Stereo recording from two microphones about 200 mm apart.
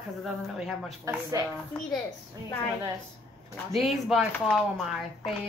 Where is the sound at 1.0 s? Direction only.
15° right (ahead or behind).